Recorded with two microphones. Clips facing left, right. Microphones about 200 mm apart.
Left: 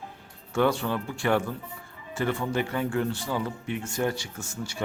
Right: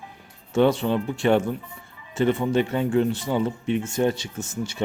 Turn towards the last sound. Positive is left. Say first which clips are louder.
# right 6 dB
turn(degrees=-20)  # may be behind; listen again after turning